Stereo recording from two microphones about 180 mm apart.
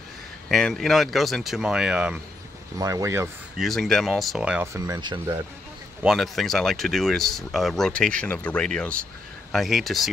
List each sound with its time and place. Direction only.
0.5 s speech: centre (ahead or behind)
2.8 s speech: 15° right (ahead or behind)
3.5 s speech: centre (ahead or behind)
4.7 s speech: 20° right (ahead or behind)
6.0 s speech: centre (ahead or behind)